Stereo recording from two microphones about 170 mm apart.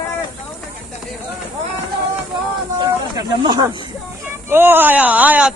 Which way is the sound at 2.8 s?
25° right (ahead or behind).